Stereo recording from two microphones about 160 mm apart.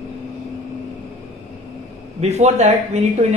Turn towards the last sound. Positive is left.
turn(degrees=-45)  # may be behind; listen again after turning